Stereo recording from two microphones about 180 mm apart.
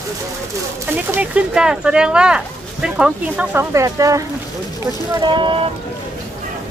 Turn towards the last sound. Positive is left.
turn(degrees=-30)  # may be behind; listen again after turning